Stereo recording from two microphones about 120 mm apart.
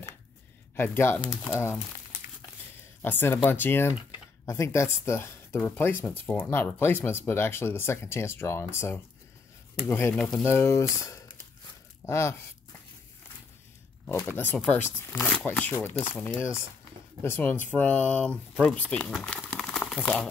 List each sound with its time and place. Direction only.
0.7 s speech: 20° left (ahead or behind)
3.0 s speech: 15° left (ahead or behind)
14.3 s speech: 15° left (ahead or behind)